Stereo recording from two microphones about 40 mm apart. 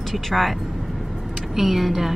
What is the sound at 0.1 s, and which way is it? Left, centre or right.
Speech, centre.